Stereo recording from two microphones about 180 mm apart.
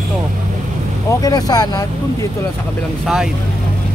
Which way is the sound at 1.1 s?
20° left (ahead or behind).